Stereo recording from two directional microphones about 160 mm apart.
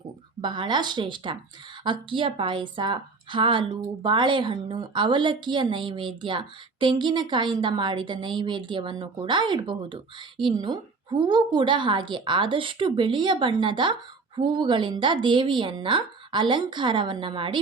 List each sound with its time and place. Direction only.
0.4 s a woman's voice: 30° right (ahead or behind)